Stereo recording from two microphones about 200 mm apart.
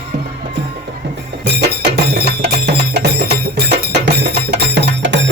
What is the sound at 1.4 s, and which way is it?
Music, 55° right (ahead or behind).